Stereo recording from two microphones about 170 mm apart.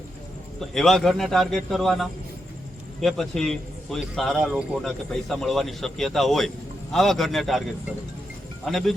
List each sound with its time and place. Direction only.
0.7 s a man's voice: centre (ahead or behind)
8.6 s a man's voice: centre (ahead or behind)